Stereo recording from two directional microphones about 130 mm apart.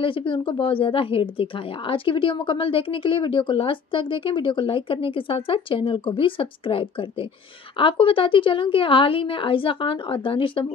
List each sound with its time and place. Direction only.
0.0 s a woman's voice: 40° left (ahead or behind)